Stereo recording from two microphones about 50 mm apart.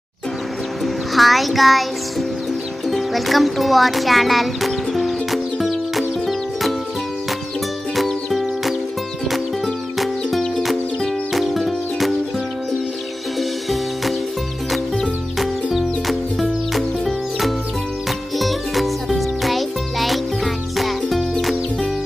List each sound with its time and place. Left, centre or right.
0.8 s music: centre
7.9 s music: centre
9.9 s music: centre
13.4 s music: centre
15.3 s music: centre